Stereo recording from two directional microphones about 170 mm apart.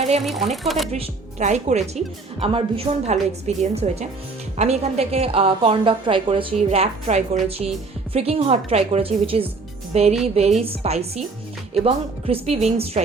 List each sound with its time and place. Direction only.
0.2 s speech: centre (ahead or behind)
0.9 s a woman's voice: 40° right (ahead or behind)